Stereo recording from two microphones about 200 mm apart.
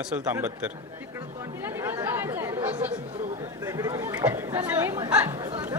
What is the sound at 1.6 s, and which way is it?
Chatter, 10° right (ahead or behind).